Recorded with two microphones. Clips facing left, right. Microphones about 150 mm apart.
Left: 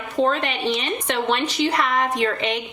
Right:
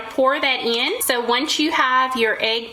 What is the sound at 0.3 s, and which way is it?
A woman's voice, 75° right (ahead or behind).